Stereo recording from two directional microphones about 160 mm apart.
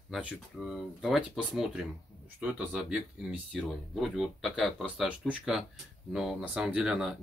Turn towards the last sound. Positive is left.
turn(degrees=-5)  # may be behind; listen again after turning